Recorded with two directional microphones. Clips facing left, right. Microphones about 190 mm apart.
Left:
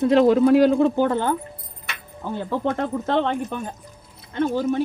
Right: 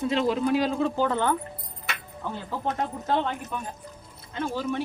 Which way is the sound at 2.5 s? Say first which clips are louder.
Left 6 dB; 65° left (ahead or behind).